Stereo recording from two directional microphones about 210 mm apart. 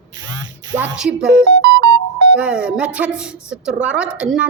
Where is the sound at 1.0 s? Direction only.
5° right (ahead or behind).